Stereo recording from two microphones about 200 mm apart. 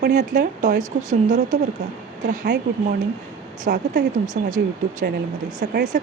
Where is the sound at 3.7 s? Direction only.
50° right (ahead or behind).